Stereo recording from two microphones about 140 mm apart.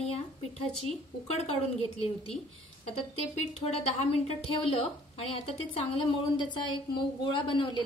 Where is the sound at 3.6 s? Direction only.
45° left (ahead or behind).